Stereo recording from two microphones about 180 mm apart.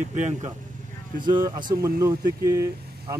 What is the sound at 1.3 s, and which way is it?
Speech, 25° right (ahead or behind).